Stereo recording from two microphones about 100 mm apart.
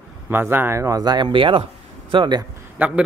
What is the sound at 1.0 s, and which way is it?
Speech, 45° right (ahead or behind).